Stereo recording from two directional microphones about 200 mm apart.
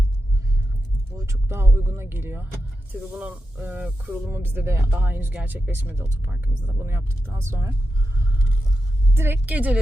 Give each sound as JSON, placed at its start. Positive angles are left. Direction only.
{"t": 1.1, "sound": "speech", "side_deg": -15}
{"t": 9.1, "sound": "speech", "side_deg": -10}